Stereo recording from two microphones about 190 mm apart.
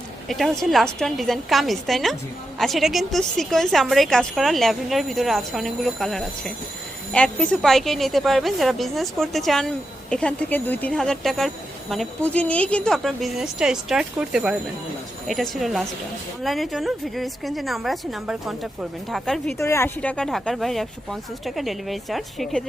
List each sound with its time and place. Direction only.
0.3 s a woman's voice: centre (ahead or behind)
19.5 s a woman's voice: 15° left (ahead or behind)